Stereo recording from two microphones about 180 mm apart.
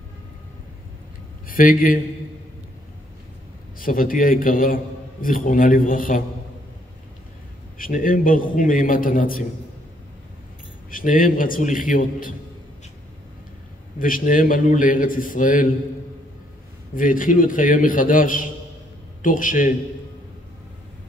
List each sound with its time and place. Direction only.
1.5 s a man's voice: 50° left (ahead or behind)
3.7 s a man's voice: 50° left (ahead or behind)
7.8 s a man's voice: 50° left (ahead or behind)
10.9 s a man's voice: 50° left (ahead or behind)
13.9 s a man's voice: 50° left (ahead or behind)
16.9 s a man's voice: 50° left (ahead or behind)